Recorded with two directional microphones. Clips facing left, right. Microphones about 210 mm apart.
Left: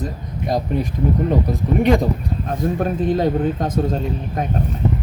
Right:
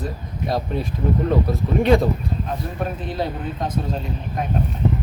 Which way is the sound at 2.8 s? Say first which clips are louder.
Left 8 dB; 45° left (ahead or behind).